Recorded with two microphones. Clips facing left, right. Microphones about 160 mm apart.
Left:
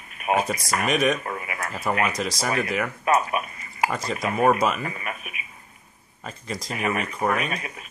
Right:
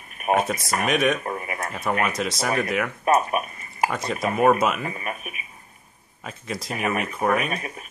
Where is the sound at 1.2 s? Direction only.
35° right (ahead or behind).